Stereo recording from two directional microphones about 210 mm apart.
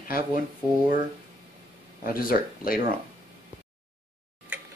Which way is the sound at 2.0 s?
45° left (ahead or behind).